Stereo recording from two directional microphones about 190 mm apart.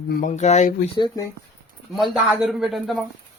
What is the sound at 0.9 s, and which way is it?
Speech, 25° left (ahead or behind).